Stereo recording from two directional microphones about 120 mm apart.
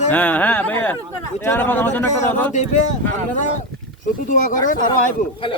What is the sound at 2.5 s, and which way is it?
Speech, 85° left.